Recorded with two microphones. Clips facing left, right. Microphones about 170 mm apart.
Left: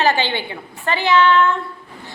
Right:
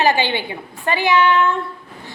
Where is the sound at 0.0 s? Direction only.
15° right (ahead or behind).